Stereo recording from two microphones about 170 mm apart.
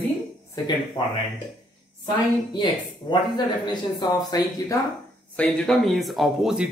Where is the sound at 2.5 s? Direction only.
25° left (ahead or behind).